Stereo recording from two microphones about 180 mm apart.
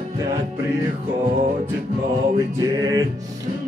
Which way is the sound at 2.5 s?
20° right (ahead or behind).